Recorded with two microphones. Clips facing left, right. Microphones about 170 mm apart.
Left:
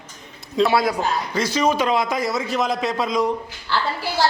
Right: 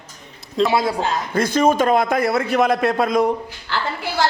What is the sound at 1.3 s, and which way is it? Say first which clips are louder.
A man's voice: right 5 dB; 55° right (ahead or behind).